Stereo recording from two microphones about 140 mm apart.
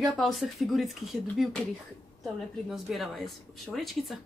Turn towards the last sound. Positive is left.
turn(degrees=0)  # may be behind; listen again after turning